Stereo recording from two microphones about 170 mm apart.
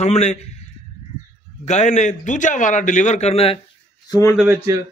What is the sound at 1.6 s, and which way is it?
A man's voice, 45° left (ahead or behind).